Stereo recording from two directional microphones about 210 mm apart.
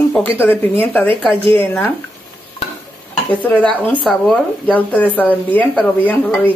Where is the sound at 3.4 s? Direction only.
5° left (ahead or behind).